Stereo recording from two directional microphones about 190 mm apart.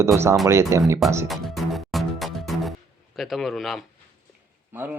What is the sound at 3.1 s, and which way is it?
Speech, centre (ahead or behind).